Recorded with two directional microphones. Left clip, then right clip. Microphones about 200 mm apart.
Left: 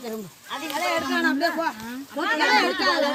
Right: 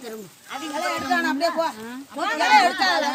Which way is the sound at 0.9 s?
35° right (ahead or behind).